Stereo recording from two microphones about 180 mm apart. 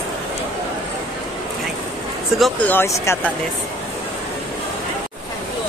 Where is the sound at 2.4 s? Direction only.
10° left (ahead or behind).